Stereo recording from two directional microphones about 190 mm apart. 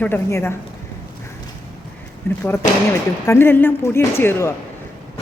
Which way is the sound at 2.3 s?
10° left (ahead or behind).